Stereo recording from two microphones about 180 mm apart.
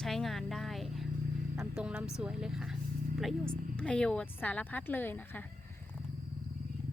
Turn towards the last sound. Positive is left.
turn(degrees=10)  # may be behind; listen again after turning